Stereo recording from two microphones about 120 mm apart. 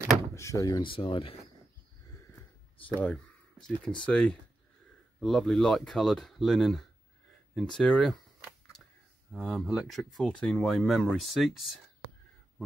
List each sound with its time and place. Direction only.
0.3 s speech: 25° left (ahead or behind); by 1.4 s 50° left (ahead or behind)
3.0 s speech: 10° left (ahead or behind)
7.5 s camera: 5° left (ahead or behind)
9.3 s speech: centre (ahead or behind)